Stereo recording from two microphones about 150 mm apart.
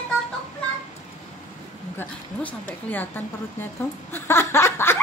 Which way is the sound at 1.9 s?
10° left (ahead or behind).